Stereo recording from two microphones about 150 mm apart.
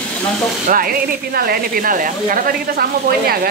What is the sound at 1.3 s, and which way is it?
Speech, 85° right.